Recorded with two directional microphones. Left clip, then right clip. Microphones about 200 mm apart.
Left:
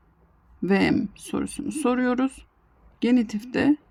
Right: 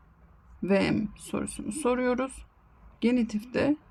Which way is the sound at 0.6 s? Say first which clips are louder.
Left 4 dB; 40° left (ahead or behind).